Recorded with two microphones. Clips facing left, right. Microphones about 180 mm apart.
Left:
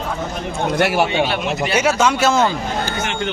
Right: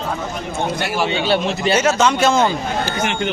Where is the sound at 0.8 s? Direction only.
65° left (ahead or behind).